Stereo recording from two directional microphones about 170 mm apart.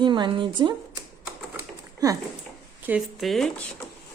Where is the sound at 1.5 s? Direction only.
20° right (ahead or behind).